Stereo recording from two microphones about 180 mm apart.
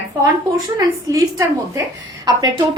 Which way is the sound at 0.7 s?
20° right (ahead or behind).